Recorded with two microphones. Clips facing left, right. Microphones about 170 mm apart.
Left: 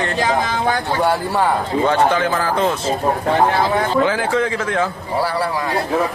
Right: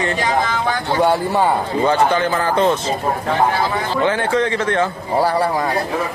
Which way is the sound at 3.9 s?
Centre (ahead or behind).